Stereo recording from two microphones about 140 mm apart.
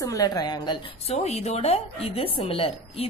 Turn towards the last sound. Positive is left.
turn(degrees=45)  # may be behind; listen again after turning